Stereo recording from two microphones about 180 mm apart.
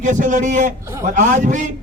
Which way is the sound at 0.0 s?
45° right (ahead or behind).